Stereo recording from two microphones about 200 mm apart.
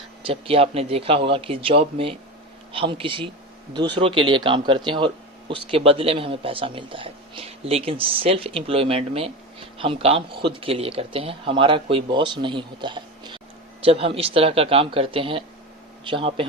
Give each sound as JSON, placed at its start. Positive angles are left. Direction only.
{"t": 0.2, "sound": "speech", "side_deg": -25}